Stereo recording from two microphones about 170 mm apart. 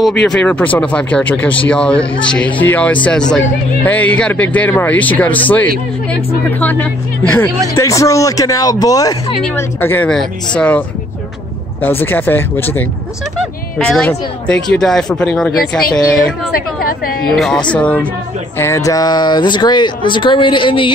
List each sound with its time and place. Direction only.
0.2 s speech: 5° left (ahead or behind)
12.0 s speech: 10° left (ahead or behind)
14.0 s speech: 5° left (ahead or behind)
17.3 s speech: centre (ahead or behind)
18.6 s speech: 15° left (ahead or behind)